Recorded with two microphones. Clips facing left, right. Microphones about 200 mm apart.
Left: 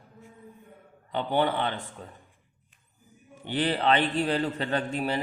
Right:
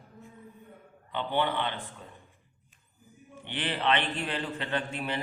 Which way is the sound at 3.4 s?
40° left (ahead or behind).